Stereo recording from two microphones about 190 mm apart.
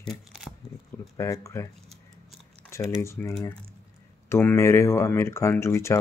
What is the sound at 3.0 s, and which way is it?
Speech, 15° left (ahead or behind).